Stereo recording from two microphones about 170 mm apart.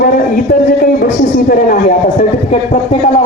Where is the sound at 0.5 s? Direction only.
55° left (ahead or behind).